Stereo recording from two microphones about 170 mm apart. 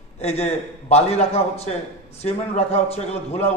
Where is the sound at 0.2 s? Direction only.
40° left (ahead or behind).